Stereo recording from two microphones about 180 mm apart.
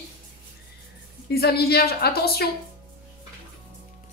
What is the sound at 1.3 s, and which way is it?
A woman's voice, 60° left (ahead or behind).